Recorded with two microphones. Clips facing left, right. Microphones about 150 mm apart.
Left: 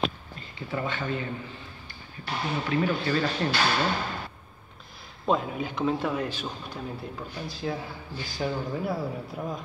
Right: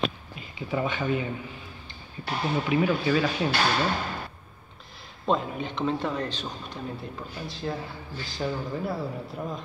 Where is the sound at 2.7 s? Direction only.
10° right (ahead or behind).